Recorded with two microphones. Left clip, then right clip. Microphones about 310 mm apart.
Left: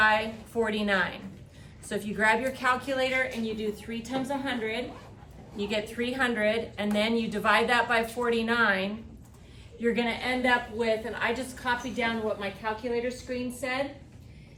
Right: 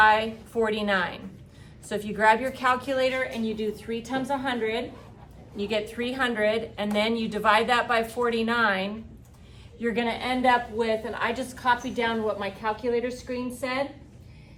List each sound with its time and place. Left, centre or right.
0.0 s a woman's voice: centre